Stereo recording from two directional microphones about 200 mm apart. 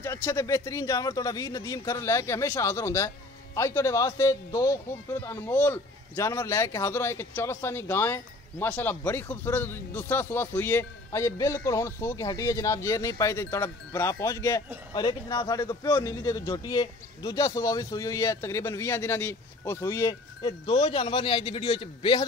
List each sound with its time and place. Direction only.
0.0 s a man's voice: 10° left (ahead or behind)